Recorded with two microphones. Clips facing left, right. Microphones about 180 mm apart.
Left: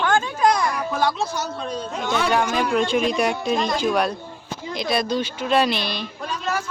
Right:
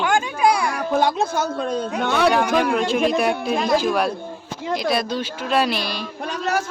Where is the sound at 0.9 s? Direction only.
50° right (ahead or behind).